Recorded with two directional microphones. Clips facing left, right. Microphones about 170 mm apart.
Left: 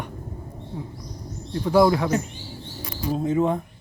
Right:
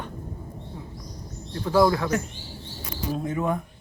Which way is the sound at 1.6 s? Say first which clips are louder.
Left 2 dB; 15° left (ahead or behind).